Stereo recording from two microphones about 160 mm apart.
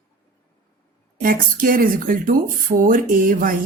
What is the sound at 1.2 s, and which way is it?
Speech, 60° right (ahead or behind).